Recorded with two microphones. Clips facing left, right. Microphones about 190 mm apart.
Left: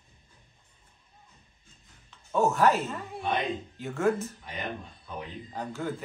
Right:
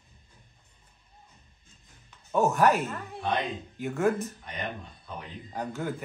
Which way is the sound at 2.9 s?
Centre (ahead or behind).